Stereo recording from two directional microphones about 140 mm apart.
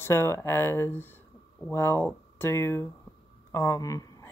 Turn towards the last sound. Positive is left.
turn(degrees=25)  # may be behind; listen again after turning